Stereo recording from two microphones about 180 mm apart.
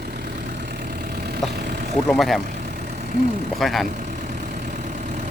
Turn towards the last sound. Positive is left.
turn(degrees=-45)  # may be behind; listen again after turning